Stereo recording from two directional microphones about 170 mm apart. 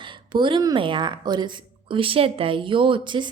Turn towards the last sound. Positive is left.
turn(degrees=-25)  # may be behind; listen again after turning